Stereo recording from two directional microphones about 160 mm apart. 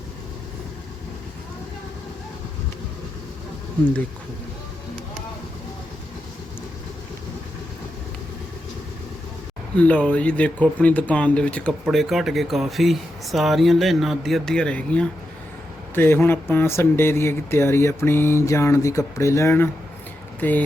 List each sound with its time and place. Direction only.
9.7 s speech: 10° left (ahead or behind)